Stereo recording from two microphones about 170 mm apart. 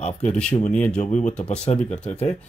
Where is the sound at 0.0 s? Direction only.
45° left (ahead or behind).